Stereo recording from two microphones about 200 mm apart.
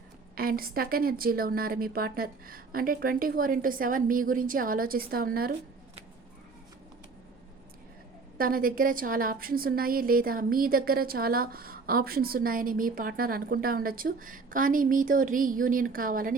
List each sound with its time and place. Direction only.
0.3 s a woman's voice: 50° right (ahead or behind)
8.4 s a woman's voice: 45° right (ahead or behind)